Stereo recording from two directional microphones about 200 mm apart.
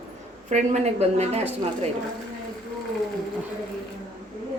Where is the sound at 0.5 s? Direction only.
35° right (ahead or behind).